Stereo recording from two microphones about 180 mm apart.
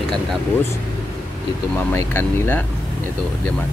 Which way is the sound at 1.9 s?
15° left (ahead or behind).